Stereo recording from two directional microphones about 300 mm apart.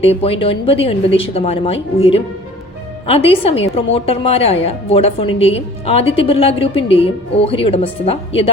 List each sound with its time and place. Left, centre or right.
0.0 s a woman's voice: centre